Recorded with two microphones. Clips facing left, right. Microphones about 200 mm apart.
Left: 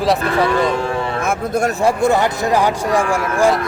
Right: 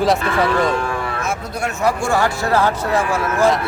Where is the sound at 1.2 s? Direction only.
50° left (ahead or behind).